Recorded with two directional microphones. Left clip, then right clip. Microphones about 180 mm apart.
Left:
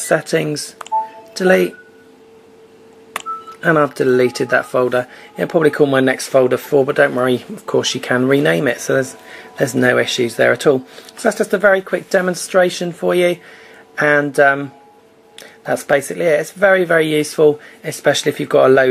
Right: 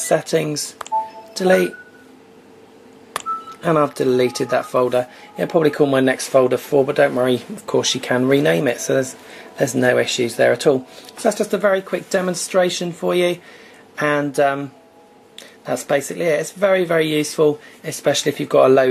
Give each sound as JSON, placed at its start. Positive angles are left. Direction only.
{"t": 0.1, "sound": "speech", "side_deg": 15}
{"t": 3.6, "sound": "speech", "side_deg": 15}